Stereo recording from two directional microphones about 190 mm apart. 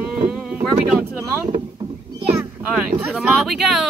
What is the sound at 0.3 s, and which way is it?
Boat, 5° right (ahead or behind).